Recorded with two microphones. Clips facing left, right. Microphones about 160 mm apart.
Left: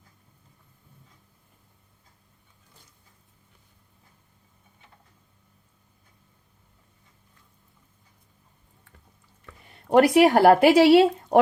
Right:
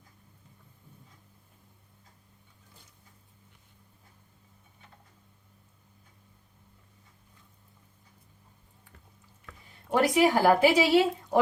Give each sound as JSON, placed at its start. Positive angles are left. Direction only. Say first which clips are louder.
{"t": 9.6, "sound": "speech", "louder": "left 8 dB", "side_deg": 65}